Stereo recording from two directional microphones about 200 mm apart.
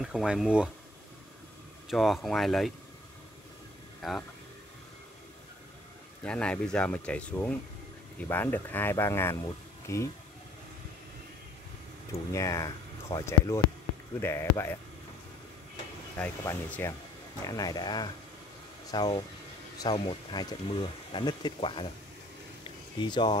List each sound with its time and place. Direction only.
0.0 s speech: centre (ahead or behind)
1.9 s speech: centre (ahead or behind)
4.0 s speech: centre (ahead or behind)
6.2 s speech: 5° left (ahead or behind)
12.1 s speech: 15° left (ahead or behind)
16.2 s speech: 10° left (ahead or behind); by 21.8 s 25° left (ahead or behind)
22.6 s a sound: 25° left (ahead or behind)